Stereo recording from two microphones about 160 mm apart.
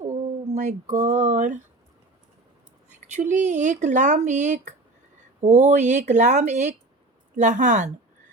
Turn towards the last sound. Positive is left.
turn(degrees=-50)  # may be behind; listen again after turning